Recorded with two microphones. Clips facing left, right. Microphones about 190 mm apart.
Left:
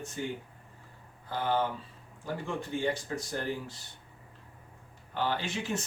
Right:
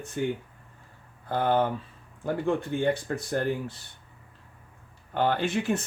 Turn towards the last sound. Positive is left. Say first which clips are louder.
# right 7 dB
turn(degrees=-55)  # may be behind; listen again after turning